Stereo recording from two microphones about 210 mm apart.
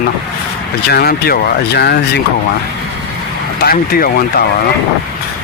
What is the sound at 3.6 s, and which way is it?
Speech, 45° left (ahead or behind).